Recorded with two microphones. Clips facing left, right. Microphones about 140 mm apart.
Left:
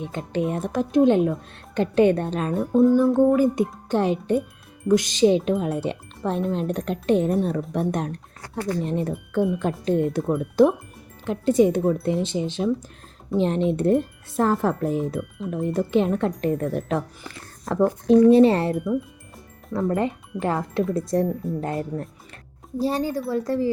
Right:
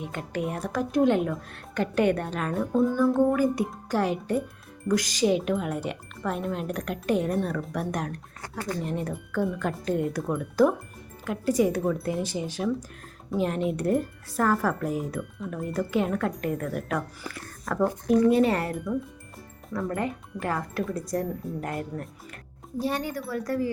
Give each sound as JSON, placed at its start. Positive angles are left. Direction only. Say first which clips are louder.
{"t": 0.0, "sound": "speech", "louder": "left 5 dB", "side_deg": 25}